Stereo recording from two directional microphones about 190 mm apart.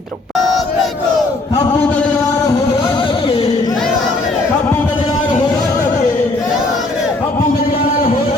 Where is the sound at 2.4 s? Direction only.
15° left (ahead or behind).